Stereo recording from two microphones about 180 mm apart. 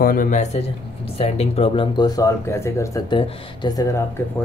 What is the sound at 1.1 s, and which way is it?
Speech, 35° left (ahead or behind).